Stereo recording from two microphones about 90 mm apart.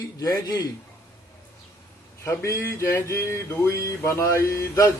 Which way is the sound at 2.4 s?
30° left (ahead or behind).